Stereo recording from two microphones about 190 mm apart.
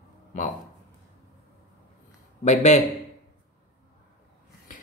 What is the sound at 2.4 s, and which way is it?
Speech, 40° left (ahead or behind).